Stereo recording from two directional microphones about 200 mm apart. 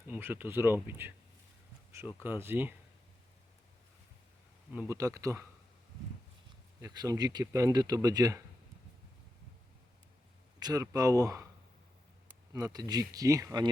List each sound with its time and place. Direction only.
0.1 s speech: 10° right (ahead or behind)
4.7 s speech: 10° right (ahead or behind)
6.8 s speech: 20° right (ahead or behind)
10.6 s speech: 20° right (ahead or behind)
12.5 s speech: 15° right (ahead or behind)